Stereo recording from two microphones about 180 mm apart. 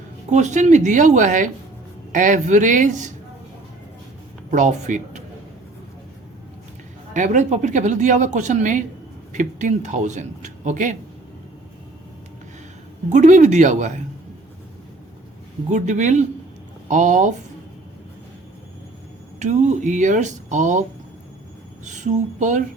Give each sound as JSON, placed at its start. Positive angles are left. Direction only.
{"t": 0.3, "sound": "speech", "side_deg": -40}
{"t": 4.5, "sound": "speech", "side_deg": -40}
{"t": 7.1, "sound": "speech", "side_deg": -45}
{"t": 13.1, "sound": "speech", "side_deg": -40}
{"t": 15.7, "sound": "speech", "side_deg": -40}
{"t": 19.4, "sound": "speech", "side_deg": -40}
{"t": 21.8, "sound": "speech", "side_deg": -40}